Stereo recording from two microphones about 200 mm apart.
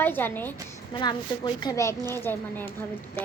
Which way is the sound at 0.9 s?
20° left (ahead or behind).